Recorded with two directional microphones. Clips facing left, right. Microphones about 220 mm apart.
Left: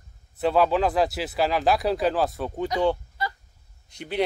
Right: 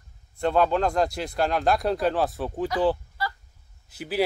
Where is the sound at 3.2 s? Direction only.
20° left (ahead or behind).